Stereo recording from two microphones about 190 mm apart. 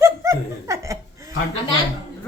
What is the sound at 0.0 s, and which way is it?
Speech, 15° right (ahead or behind).